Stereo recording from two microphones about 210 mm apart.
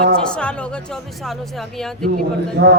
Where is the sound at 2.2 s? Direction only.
50° right (ahead or behind).